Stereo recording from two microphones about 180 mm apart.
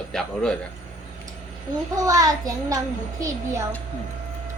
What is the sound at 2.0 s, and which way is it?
A child's voice, 20° right (ahead or behind).